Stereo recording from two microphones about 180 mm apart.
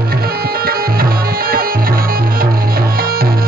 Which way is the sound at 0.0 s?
60° right (ahead or behind).